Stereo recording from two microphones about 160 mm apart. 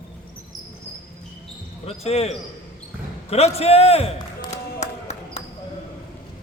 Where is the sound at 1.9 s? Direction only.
40° left (ahead or behind).